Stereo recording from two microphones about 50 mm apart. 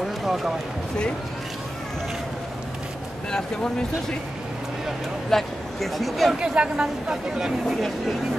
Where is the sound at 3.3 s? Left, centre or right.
Centre.